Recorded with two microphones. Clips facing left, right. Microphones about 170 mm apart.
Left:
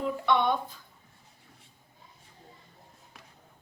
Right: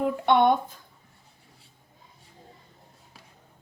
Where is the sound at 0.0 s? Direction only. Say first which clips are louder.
Right 5 dB; 55° right (ahead or behind).